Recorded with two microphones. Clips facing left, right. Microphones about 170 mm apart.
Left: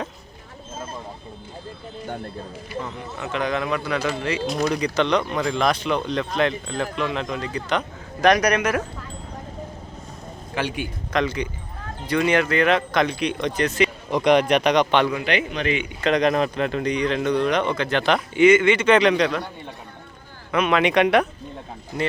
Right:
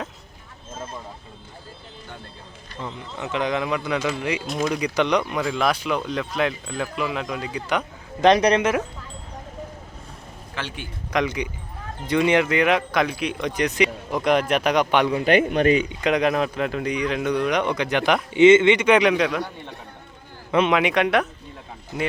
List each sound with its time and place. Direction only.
2.8 s speech: 20° right (ahead or behind)
8.2 s speech: 25° right (ahead or behind)
10.5 s a man's voice: 15° left (ahead or behind)
11.1 s speech: 15° right (ahead or behind)
14.1 s a man's voice: 5° right (ahead or behind)
15.1 s speech: 45° right (ahead or behind)
16.0 s speech: 10° right (ahead or behind)
20.5 s a man's voice: 25° right (ahead or behind)
20.7 s a man's voice: 5° right (ahead or behind)